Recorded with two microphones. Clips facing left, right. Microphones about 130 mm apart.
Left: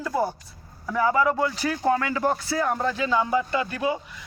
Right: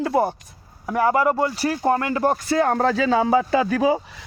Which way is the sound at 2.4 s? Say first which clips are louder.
Right 6 dB; 75° right (ahead or behind).